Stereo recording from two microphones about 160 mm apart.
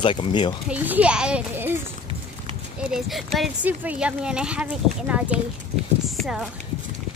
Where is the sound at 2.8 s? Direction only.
Centre (ahead or behind).